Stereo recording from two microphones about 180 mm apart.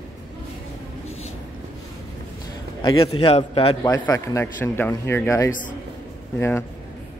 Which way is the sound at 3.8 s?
20° left (ahead or behind).